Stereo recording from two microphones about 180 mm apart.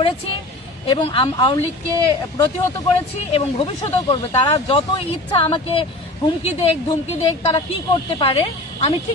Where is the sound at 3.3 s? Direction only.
30° left (ahead or behind).